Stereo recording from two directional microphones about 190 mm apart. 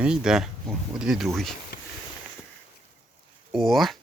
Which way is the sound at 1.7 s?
60° left (ahead or behind).